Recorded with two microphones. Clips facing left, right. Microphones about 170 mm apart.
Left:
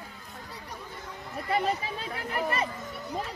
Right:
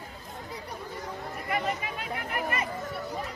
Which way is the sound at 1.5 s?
30° left (ahead or behind).